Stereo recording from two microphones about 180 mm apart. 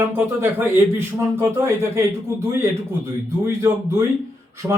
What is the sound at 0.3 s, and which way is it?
A man's voice, 15° right (ahead or behind).